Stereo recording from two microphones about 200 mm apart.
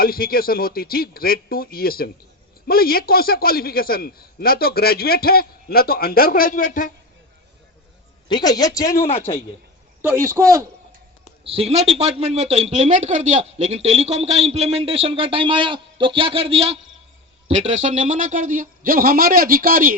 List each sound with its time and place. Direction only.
0.0 s a man's voice: 50° left (ahead or behind)
8.3 s a man's voice: 20° left (ahead or behind)
9.0 s a man's voice: 35° left (ahead or behind)
10.0 s speech: 15° right (ahead or behind)
11.4 s a man's voice: 30° right (ahead or behind); by 20.0 s 45° right (ahead or behind)